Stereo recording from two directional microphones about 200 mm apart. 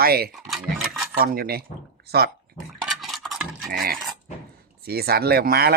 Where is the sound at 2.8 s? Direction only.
Centre (ahead or behind).